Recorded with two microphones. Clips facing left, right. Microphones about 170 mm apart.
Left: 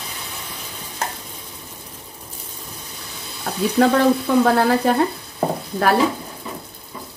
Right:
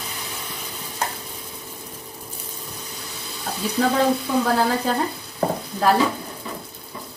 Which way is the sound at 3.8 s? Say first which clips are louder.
Left 5 dB; 65° left (ahead or behind).